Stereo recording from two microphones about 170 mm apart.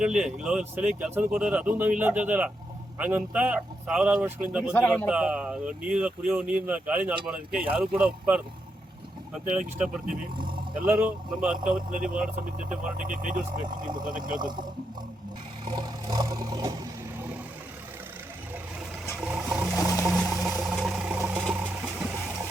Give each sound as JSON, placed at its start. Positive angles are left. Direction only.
{"t": 0.0, "sound": "speech", "side_deg": -5}
{"t": 4.7, "sound": "speech", "side_deg": 10}
{"t": 5.0, "sound": "speech", "side_deg": -5}
{"t": 10.3, "sound": "speech", "side_deg": -30}
{"t": 10.8, "sound": "speech", "side_deg": -10}
{"t": 13.0, "sound": "speech", "side_deg": -50}
{"t": 14.3, "sound": "speech", "side_deg": -25}
{"t": 15.6, "sound": "vehicle", "side_deg": -25}
{"t": 19.1, "sound": "a sound", "side_deg": -10}
{"t": 21.2, "sound": "vehicle", "side_deg": -10}